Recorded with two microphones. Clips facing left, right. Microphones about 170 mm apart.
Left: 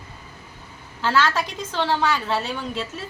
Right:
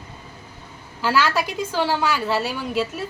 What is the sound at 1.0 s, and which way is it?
A woman's voice, 10° right (ahead or behind).